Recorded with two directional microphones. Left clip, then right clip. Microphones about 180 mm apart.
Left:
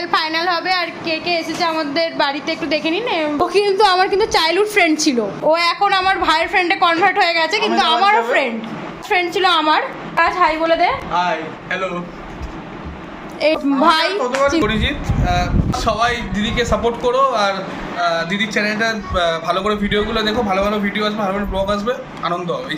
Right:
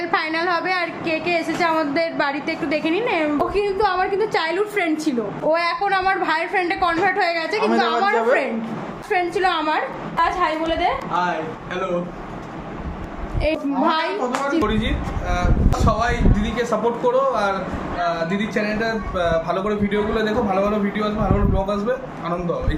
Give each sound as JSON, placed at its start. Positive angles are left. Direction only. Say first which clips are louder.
{"t": 0.1, "sound": "a woman's voice", "louder": "left 4 dB", "side_deg": -5}
{"t": 3.5, "sound": "a woman's voice", "louder": "left 6 dB", "side_deg": 40}
{"t": 5.5, "sound": "a woman's voice", "louder": "left 4 dB", "side_deg": 20}
{"t": 11.1, "sound": "speech", "louder": "left 3 dB", "side_deg": -15}
{"t": 13.4, "sound": "a woman's voice", "louder": "left 6 dB", "side_deg": 35}
{"t": 14.6, "sound": "a woman's voice", "louder": "left 3 dB", "side_deg": -5}